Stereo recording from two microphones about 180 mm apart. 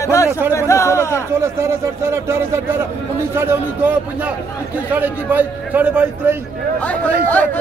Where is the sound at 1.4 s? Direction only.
15° right (ahead or behind).